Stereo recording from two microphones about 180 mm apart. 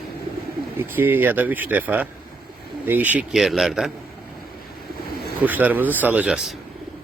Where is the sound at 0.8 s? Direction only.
10° right (ahead or behind).